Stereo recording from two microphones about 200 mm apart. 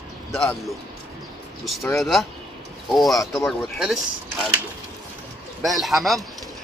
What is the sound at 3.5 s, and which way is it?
Speech, centre (ahead or behind).